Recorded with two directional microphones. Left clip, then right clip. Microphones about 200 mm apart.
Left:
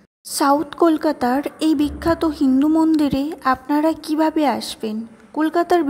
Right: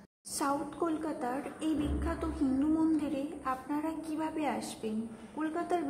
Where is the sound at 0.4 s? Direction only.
40° left (ahead or behind).